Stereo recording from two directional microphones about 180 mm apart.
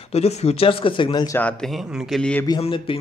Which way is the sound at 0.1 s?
35° left (ahead or behind).